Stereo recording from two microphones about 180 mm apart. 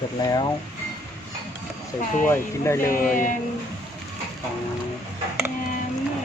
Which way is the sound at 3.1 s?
45° left (ahead or behind).